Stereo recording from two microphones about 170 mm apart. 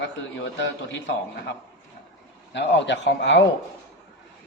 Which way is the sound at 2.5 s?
90° left.